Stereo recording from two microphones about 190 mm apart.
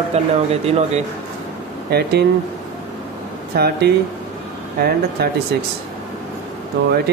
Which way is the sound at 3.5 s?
55° right (ahead or behind).